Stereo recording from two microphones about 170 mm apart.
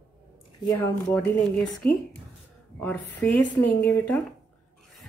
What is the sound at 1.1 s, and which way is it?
A woman's voice, 5° left (ahead or behind).